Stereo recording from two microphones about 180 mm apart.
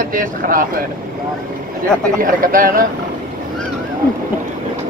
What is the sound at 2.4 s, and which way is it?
Speech, 50° right (ahead or behind).